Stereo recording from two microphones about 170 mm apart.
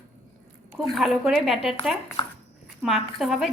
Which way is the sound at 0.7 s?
Centre (ahead or behind).